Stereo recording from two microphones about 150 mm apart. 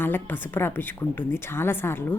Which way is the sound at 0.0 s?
15° left (ahead or behind).